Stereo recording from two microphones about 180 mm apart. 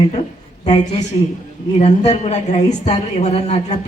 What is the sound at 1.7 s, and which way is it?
A man's voice, 35° left (ahead or behind).